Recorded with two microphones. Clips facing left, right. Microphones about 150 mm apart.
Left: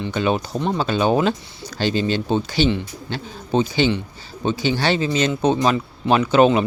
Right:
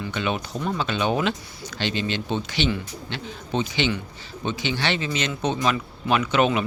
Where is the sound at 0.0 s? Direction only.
35° left (ahead or behind).